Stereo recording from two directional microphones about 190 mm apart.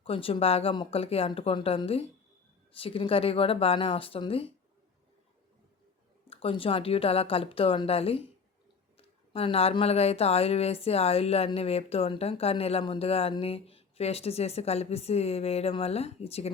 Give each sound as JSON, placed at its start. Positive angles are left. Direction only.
{"t": 0.0, "sound": "speech", "side_deg": 30}
{"t": 6.2, "sound": "speech", "side_deg": 30}